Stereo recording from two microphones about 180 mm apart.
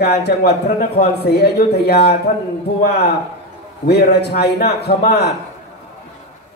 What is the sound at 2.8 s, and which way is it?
A man's voice, 60° left (ahead or behind).